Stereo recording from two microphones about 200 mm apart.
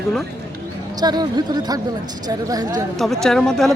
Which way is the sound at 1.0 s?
20° right (ahead or behind).